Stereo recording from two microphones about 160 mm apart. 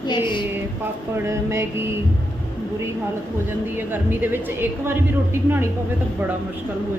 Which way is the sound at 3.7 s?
15° right (ahead or behind).